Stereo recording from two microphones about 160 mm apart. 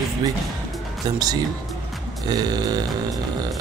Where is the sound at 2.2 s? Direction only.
25° right (ahead or behind).